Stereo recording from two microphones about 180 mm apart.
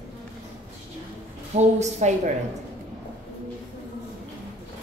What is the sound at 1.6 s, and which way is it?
Speech, 40° right (ahead or behind).